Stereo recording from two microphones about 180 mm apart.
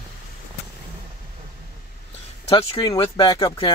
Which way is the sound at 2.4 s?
30° left (ahead or behind).